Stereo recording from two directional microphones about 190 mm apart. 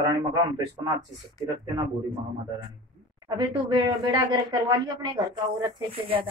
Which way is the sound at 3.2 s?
25° right (ahead or behind).